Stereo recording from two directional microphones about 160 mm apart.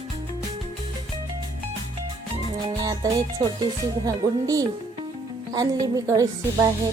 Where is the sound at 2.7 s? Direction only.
25° right (ahead or behind).